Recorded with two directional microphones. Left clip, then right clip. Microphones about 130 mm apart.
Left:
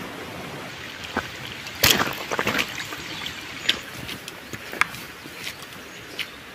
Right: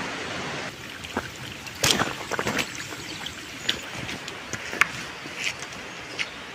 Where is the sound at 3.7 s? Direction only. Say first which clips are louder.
Left 4 dB; 10° right (ahead or behind).